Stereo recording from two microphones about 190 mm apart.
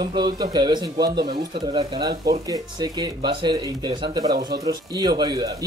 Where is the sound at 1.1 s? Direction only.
55° right (ahead or behind).